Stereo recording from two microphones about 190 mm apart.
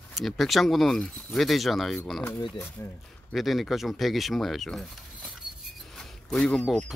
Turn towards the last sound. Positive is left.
turn(degrees=5)  # may be behind; listen again after turning